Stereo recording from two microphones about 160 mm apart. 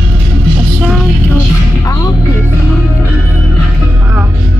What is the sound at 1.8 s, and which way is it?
Music, 15° left (ahead or behind).